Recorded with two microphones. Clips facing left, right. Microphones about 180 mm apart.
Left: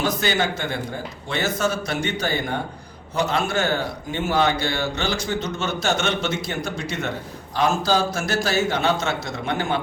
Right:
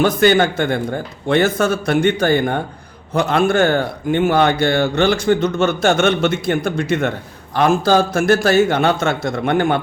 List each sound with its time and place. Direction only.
0.0 s speech: 55° right (ahead or behind)